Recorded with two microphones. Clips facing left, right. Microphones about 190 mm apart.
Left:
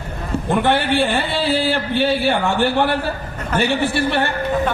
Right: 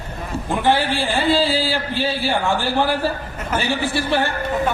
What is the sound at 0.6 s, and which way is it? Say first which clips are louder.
A man's voice: left 1 dB; 60° left (ahead or behind).